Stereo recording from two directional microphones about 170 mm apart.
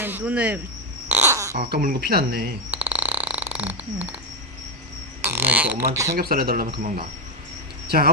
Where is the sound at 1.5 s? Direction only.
60° right (ahead or behind).